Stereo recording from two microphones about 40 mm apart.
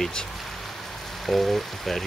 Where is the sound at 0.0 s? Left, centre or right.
Centre.